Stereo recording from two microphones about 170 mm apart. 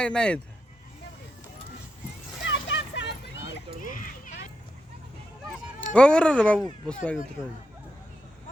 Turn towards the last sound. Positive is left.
turn(degrees=5)  # may be behind; listen again after turning